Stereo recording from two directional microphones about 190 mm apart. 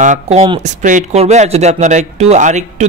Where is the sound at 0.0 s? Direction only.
40° right (ahead or behind).